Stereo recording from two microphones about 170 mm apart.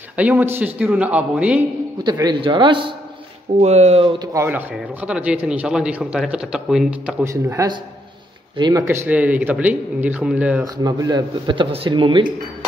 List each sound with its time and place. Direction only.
0.1 s speech: 10° right (ahead or behind)
2.0 s speech: 25° right (ahead or behind)
3.6 s speech: 40° right (ahead or behind)
4.3 s speech: 15° right (ahead or behind)
8.8 s speech: 10° right (ahead or behind)
10.6 s speech: 20° right (ahead or behind)